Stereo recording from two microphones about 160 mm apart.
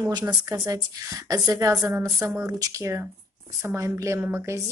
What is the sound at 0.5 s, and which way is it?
A woman's voice, 20° right (ahead or behind).